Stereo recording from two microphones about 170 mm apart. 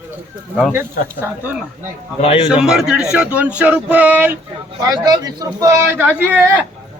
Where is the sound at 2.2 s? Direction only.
35° left (ahead or behind).